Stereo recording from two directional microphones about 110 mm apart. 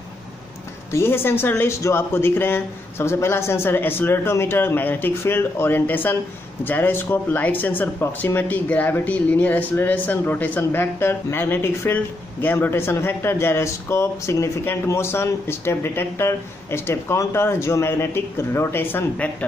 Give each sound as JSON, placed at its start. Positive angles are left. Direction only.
{"t": 0.9, "sound": "speech", "side_deg": 20}